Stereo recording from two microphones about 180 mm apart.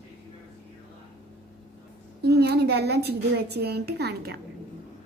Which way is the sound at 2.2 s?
65° right (ahead or behind).